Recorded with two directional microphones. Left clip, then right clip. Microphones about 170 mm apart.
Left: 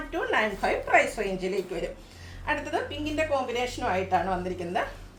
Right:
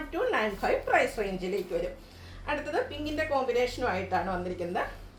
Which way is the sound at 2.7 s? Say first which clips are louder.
Left 2 dB; 15° left (ahead or behind).